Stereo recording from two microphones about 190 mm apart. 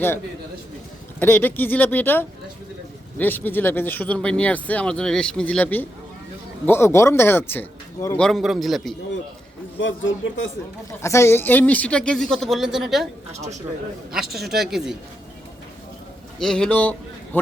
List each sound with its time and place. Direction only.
1.2 s speech: 10° left (ahead or behind)
9.8 s speech: 80° left
11.0 s speech: 15° left (ahead or behind); by 13.1 s centre (ahead or behind)
13.3 s speech: 35° right (ahead or behind)
14.1 s speech: centre (ahead or behind)
16.4 s a man's voice: 5° left (ahead or behind)